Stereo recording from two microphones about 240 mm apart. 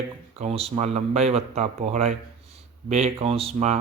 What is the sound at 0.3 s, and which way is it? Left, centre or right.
Speech, right.